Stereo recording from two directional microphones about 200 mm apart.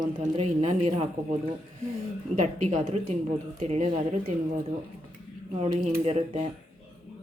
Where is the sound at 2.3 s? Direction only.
40° right (ahead or behind).